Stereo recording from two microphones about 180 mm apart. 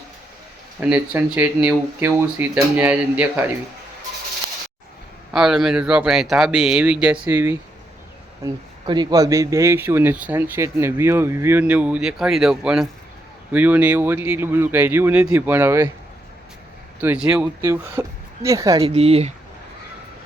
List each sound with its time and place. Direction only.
0.8 s speech: 10° right (ahead or behind)
5.3 s speech: 5° right (ahead or behind)
8.9 s speech: 25° right (ahead or behind)
17.0 s speech: 10° right (ahead or behind)
17.6 s speech: 15° right (ahead or behind)
18.8 s speech: 35° right (ahead or behind)